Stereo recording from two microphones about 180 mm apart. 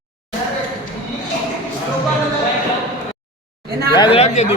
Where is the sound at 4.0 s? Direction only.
30° left (ahead or behind).